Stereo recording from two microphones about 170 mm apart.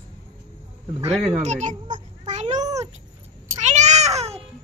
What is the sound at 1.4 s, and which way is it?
A child's voice, 40° right (ahead or behind).